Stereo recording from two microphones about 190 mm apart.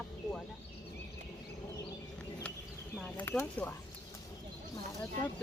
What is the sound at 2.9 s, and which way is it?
Speech, 10° left (ahead or behind).